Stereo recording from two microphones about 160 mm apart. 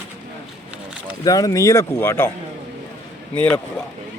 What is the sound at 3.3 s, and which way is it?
Speech, 5° left (ahead or behind).